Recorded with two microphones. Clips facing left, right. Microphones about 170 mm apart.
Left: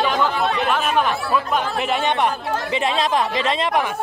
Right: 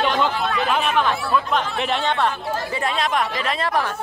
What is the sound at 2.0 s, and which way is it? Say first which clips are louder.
Speech: left 2 dB; 15° left (ahead or behind).